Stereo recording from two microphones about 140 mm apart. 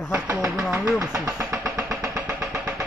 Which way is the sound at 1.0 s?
20° right (ahead or behind).